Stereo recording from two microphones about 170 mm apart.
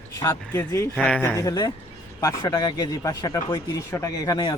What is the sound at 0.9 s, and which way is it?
A man's voice, 5° left (ahead or behind).